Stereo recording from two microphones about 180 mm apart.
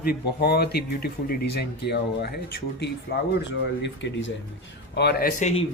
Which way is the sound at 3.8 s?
85° left.